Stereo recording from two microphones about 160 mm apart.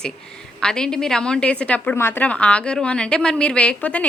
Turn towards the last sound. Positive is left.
turn(degrees=10)  # may be behind; listen again after turning